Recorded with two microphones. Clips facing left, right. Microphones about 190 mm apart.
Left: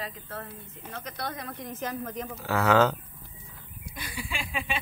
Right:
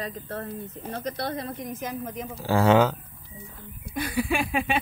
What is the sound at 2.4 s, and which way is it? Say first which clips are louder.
Speech: right 5 dB; 30° right (ahead or behind).